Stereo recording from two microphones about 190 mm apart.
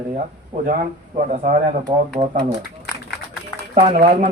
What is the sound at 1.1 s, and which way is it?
Speech, 40° right (ahead or behind).